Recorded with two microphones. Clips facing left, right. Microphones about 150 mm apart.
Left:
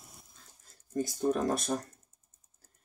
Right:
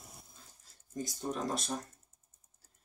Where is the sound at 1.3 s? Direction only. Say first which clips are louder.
Left 6 dB; 50° left (ahead or behind).